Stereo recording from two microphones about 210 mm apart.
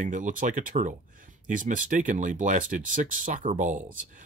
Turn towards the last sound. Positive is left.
turn(degrees=-35)  # may be behind; listen again after turning